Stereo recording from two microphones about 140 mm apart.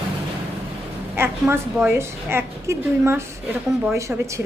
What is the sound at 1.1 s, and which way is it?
A woman's voice, 15° right (ahead or behind).